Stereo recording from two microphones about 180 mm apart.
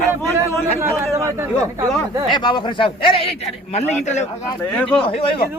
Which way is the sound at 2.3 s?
25° left (ahead or behind).